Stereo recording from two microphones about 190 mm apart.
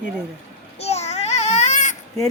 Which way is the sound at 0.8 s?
35° left (ahead or behind).